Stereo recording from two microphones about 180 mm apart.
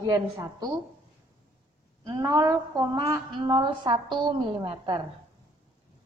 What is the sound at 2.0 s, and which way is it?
A woman's voice, 20° right (ahead or behind).